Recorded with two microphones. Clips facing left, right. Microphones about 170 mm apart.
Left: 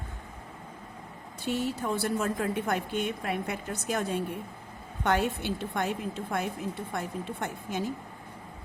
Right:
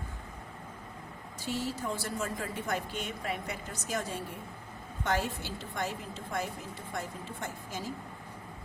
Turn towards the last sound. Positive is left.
turn(degrees=65)  # may be behind; listen again after turning